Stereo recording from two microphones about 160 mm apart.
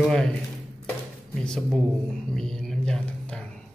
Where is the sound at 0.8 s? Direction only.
5° left (ahead or behind).